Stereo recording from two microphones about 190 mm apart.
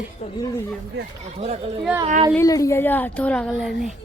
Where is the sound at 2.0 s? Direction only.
30° right (ahead or behind).